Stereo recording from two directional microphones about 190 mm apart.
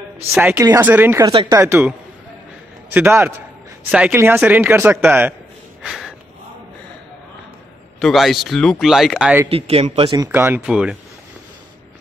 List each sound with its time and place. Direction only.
0.3 s speech: 10° right (ahead or behind)
5.8 s a sound: centre (ahead or behind)
8.0 s speech: centre (ahead or behind)
9.5 s speech: 30° right (ahead or behind)
10.2 s speech: 10° right (ahead or behind)